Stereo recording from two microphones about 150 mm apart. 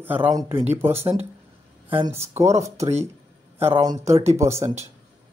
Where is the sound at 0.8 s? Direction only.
15° right (ahead or behind).